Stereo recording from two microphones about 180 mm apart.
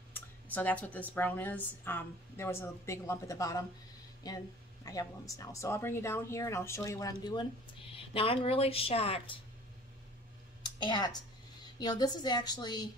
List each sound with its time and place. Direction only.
0.1 s speech: 10° left (ahead or behind); by 9.4 s 35° left (ahead or behind)
10.6 s a woman's voice: 25° left (ahead or behind)